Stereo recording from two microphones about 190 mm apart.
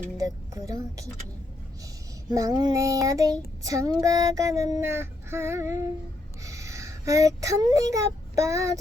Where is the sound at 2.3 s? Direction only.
20° right (ahead or behind).